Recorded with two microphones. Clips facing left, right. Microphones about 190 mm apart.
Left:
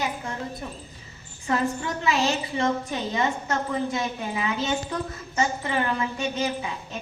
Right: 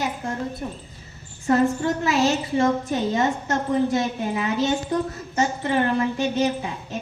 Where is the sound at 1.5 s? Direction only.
45° right (ahead or behind).